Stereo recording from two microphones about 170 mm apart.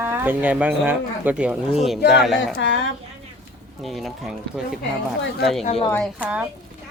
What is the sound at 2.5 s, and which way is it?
Speech, 90° left.